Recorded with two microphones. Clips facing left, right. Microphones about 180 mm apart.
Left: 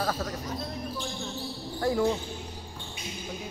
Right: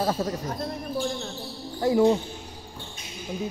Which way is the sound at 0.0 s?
25° right (ahead or behind).